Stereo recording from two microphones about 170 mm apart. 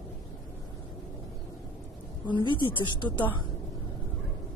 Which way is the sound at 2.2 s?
30° left (ahead or behind).